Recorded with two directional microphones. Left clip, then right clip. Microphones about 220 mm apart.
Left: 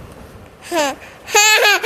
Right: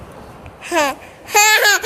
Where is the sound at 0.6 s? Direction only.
10° left (ahead or behind).